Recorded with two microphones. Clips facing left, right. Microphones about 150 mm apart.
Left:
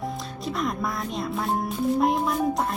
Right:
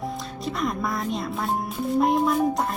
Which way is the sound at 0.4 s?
Centre (ahead or behind).